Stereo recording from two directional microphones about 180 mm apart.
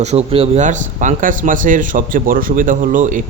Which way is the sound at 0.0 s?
35° right (ahead or behind).